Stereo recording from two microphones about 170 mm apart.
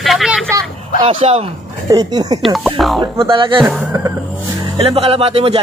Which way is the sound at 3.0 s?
30° right (ahead or behind).